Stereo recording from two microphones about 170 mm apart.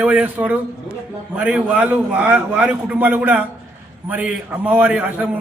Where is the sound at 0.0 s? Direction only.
10° right (ahead or behind).